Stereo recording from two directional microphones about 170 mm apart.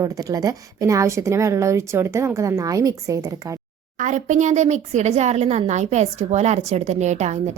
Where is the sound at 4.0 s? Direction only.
45° right (ahead or behind).